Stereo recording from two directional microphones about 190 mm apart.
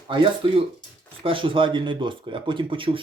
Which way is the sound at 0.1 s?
25° right (ahead or behind).